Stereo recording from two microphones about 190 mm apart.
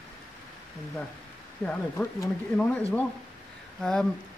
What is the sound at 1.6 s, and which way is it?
Speech, 10° left (ahead or behind).